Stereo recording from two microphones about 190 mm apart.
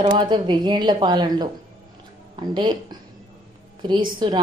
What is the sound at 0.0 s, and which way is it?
Speech, 25° right (ahead or behind).